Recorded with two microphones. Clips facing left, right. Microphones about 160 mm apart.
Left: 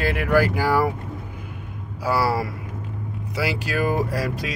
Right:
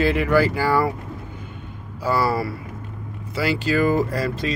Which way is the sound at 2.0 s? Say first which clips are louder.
Right 1 dB; 10° left (ahead or behind).